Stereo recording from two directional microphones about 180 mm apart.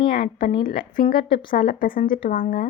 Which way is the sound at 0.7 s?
50° left (ahead or behind).